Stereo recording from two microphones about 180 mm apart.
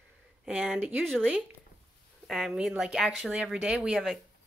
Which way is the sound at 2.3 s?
Centre (ahead or behind).